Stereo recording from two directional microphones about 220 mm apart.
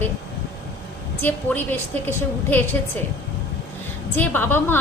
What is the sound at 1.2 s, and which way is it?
A woman's voice, 10° left (ahead or behind).